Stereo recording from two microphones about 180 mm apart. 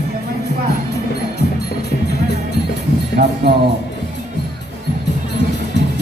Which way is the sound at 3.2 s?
50° right (ahead or behind).